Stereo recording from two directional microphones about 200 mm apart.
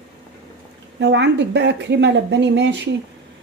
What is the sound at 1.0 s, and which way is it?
Speech, 60° right (ahead or behind).